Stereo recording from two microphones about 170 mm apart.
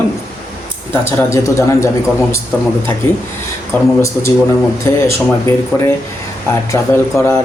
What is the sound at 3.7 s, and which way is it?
A man's voice, 10° left (ahead or behind).